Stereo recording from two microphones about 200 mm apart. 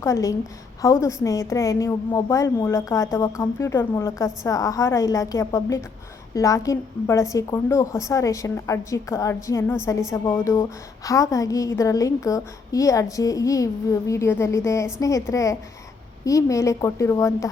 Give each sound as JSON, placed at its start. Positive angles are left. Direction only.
{"t": 0.0, "sound": "a woman's voice", "side_deg": 15}